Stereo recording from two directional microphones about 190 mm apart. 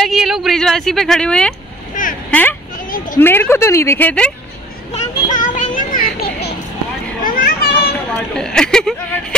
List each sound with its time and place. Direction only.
0.0 s speech: centre (ahead or behind)
2.0 s vehicle: 45° left (ahead or behind)
2.3 s a woman's voice: 5° left (ahead or behind)
4.9 s children playing: 40° left (ahead or behind)
8.1 s a woman's voice: 5° left (ahead or behind)